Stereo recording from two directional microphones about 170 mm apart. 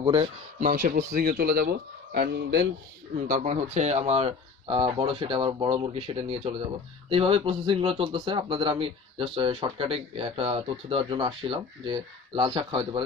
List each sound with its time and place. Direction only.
0.0 s speech: 30° right (ahead or behind)
0.6 s speech: 55° right (ahead or behind); by 2.7 s 85° right
3.3 s a man's voice: 50° right (ahead or behind); by 13.0 s 30° right (ahead or behind)